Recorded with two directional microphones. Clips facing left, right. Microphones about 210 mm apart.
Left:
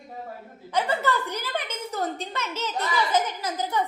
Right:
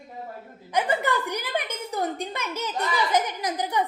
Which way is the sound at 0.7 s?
15° right (ahead or behind).